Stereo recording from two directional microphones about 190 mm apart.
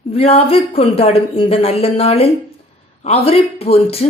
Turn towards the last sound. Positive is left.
turn(degrees=30)  # may be behind; listen again after turning